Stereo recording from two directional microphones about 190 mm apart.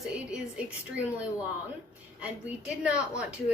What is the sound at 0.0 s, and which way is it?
A woman's voice, 5° right (ahead or behind).